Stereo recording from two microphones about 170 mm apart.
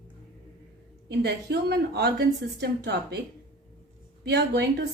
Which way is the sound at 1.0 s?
75° right (ahead or behind).